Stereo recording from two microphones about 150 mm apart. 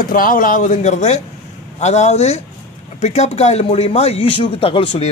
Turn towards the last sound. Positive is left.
turn(degrees=35)  # may be behind; listen again after turning